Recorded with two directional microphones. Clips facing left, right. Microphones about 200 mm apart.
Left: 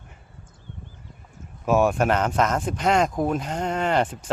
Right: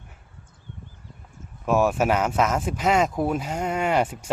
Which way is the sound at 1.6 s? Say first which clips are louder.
Left 1 dB; centre (ahead or behind).